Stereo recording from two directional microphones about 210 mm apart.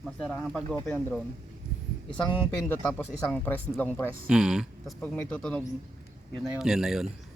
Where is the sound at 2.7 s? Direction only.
5° left (ahead or behind).